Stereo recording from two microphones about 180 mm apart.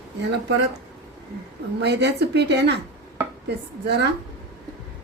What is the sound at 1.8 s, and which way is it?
A woman's voice, 70° right (ahead or behind).